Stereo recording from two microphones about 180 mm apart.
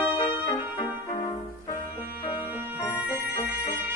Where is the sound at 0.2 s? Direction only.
25° left (ahead or behind).